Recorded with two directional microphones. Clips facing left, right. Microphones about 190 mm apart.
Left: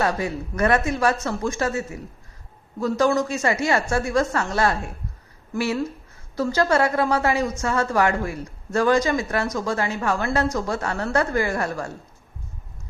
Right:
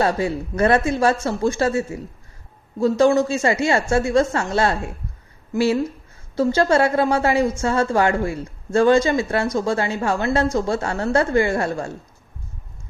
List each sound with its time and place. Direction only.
0.0 s a woman's voice: 30° right (ahead or behind)